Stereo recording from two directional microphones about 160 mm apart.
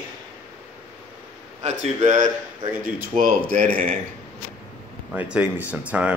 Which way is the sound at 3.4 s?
10° left (ahead or behind).